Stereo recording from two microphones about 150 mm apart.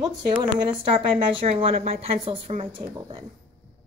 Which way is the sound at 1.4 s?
50° right (ahead or behind).